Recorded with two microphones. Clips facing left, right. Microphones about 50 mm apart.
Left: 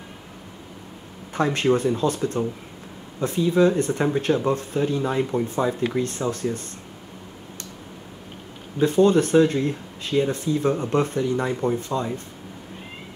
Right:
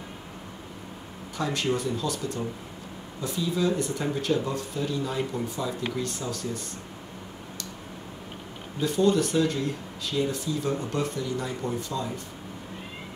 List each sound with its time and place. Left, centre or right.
1.3 s speech: left
8.7 s speech: left